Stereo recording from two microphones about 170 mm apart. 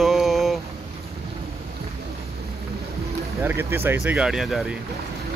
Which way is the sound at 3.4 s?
15° right (ahead or behind).